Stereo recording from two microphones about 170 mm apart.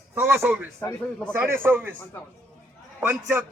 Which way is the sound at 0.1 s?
15° right (ahead or behind).